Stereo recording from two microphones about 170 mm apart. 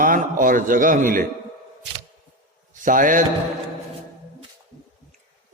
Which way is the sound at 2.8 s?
50° right (ahead or behind).